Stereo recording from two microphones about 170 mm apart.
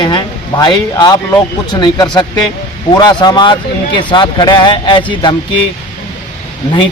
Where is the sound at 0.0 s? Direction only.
25° left (ahead or behind).